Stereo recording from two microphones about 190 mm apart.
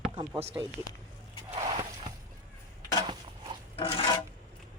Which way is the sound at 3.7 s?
30° left (ahead or behind).